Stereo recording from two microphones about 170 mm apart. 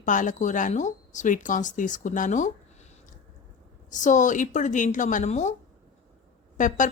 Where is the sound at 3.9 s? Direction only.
45° left (ahead or behind).